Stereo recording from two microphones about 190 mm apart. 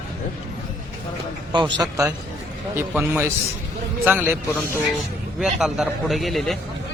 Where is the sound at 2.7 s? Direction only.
10° right (ahead or behind).